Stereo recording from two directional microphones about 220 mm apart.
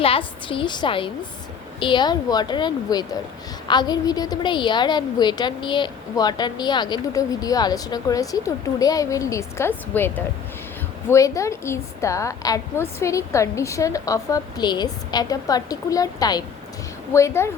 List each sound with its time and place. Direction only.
0.0 s a woman's voice: 25° left (ahead or behind)